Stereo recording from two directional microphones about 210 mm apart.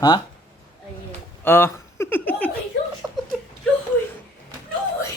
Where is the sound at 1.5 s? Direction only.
10° left (ahead or behind).